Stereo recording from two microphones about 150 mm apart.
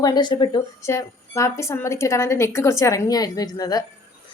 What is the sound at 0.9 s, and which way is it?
A woman's voice, 20° left (ahead or behind).